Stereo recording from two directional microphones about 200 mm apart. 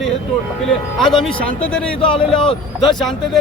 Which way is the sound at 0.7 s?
Centre (ahead or behind).